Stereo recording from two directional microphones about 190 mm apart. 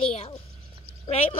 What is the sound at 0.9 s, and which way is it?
Frog, 30° left (ahead or behind).